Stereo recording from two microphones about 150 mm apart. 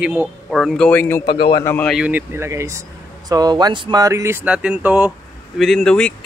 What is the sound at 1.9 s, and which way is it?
Speech, 5° right (ahead or behind).